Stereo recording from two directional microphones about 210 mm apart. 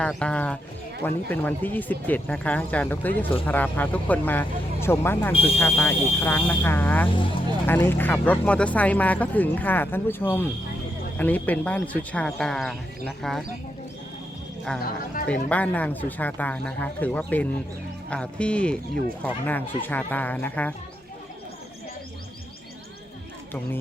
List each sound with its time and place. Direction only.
0.0 s speech: 5° left (ahead or behind)
5.3 s speech: 30° left (ahead or behind)
5.5 s speech: 10° left (ahead or behind)
15.4 s speech: 5° left (ahead or behind)